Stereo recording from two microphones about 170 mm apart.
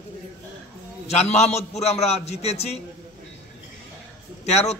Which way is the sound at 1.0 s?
40° left (ahead or behind).